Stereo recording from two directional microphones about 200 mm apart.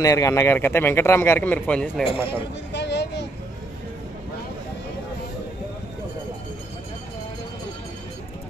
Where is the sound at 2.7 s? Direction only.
60° left (ahead or behind).